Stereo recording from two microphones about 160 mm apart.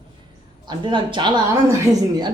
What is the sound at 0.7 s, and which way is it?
Speech, 30° right (ahead or behind).